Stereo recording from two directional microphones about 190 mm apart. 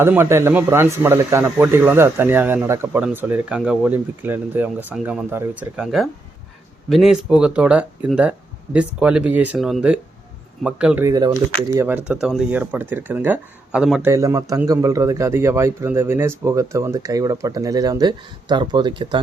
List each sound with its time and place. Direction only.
0.0 s speech: 10° right (ahead or behind)
11.1 s speech: 20° right (ahead or behind); by 14.1 s 5° right (ahead or behind)
14.1 s speech: 20° right (ahead or behind)